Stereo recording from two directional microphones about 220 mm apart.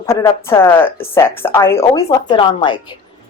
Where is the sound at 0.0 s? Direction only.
15° left (ahead or behind).